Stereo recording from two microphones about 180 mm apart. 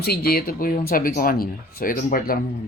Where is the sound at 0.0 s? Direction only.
60° left (ahead or behind).